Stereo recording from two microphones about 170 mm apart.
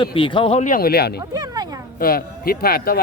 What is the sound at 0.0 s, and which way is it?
Speech, 30° left (ahead or behind).